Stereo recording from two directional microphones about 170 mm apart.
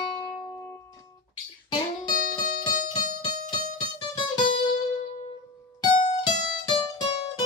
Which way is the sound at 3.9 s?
30° left (ahead or behind).